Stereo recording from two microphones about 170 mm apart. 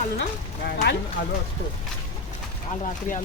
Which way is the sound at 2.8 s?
50° left (ahead or behind).